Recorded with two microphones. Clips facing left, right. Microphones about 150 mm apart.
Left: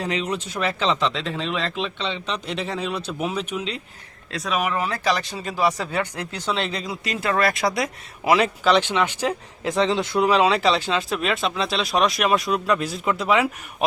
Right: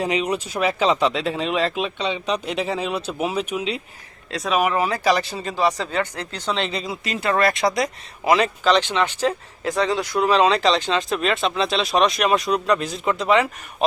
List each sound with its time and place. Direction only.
0.0 s speech: 10° right (ahead or behind)
1.5 s speech: 35° right (ahead or behind)
1.7 s speech: 10° right (ahead or behind)
5.4 s speech: 5° left (ahead or behind)
6.5 s speech: centre (ahead or behind); by 10.2 s 20° left (ahead or behind)
10.2 s speech: 10° left (ahead or behind)